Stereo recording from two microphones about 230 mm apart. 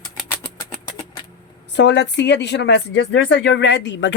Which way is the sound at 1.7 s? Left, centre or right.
Left.